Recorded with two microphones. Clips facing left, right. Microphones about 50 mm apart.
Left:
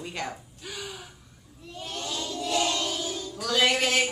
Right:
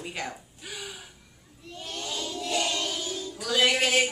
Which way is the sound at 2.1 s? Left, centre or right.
Centre.